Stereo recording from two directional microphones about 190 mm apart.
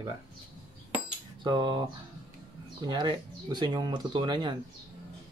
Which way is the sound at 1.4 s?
25° right (ahead or behind).